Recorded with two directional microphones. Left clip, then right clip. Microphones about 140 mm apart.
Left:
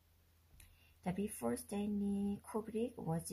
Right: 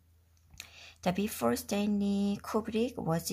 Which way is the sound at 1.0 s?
30° right (ahead or behind).